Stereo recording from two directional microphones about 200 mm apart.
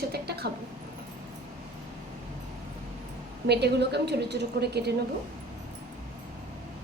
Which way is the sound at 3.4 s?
55° right (ahead or behind).